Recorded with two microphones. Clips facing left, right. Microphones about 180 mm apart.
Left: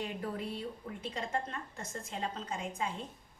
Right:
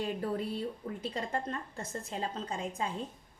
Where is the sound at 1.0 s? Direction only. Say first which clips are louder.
Right 1 dB; 35° right (ahead or behind).